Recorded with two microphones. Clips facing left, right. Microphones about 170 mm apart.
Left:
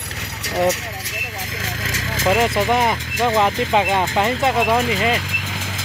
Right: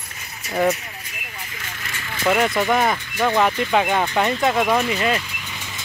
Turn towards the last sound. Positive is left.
turn(degrees=20)  # may be behind; listen again after turning